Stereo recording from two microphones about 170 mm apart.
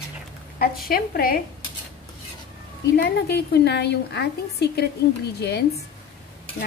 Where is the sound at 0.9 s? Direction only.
60° left (ahead or behind).